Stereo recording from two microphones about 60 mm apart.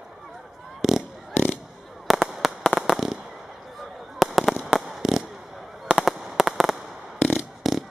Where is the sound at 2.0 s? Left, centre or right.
Centre.